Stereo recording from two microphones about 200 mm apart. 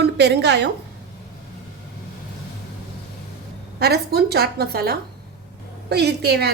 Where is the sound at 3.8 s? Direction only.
55° right (ahead or behind).